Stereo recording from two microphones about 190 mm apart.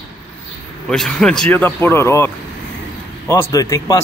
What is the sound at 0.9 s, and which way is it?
Speech, 5° left (ahead or behind).